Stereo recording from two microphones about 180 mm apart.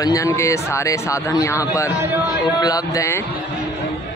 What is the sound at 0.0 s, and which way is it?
Speech, 20° left (ahead or behind).